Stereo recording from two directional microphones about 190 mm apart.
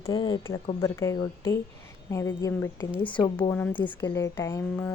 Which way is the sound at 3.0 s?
25° left (ahead or behind).